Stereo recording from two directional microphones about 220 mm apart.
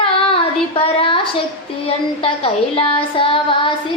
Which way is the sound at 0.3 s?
25° left (ahead or behind).